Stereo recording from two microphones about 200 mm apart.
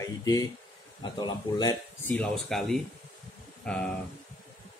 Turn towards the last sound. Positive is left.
turn(degrees=5)  # may be behind; listen again after turning